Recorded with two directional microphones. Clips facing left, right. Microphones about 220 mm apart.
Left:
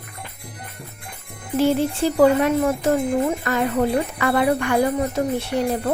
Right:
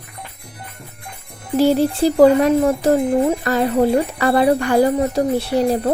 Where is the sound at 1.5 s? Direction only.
35° right (ahead or behind).